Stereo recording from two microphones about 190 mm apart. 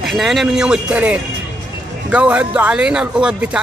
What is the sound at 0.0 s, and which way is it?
Speech, centre (ahead or behind).